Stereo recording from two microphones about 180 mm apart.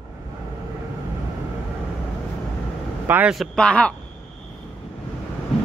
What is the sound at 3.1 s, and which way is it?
Speech, 5° right (ahead or behind).